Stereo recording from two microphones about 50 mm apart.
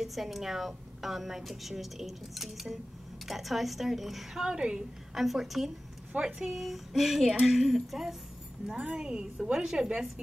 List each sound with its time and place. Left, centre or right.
0.0 s a woman's voice: centre
5.1 s a woman's voice: centre
6.1 s speech: right
6.4 s a woman's voice: centre